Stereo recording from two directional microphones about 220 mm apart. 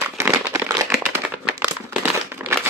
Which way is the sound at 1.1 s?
10° right (ahead or behind).